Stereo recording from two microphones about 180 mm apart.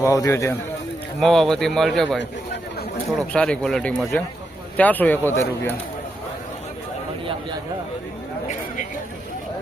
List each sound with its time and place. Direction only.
0.0 s speech: 15° left (ahead or behind)
1.2 s speech: centre (ahead or behind)
3.2 s speech: 5° left (ahead or behind)